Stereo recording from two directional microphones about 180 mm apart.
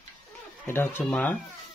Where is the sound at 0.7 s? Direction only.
10° left (ahead or behind).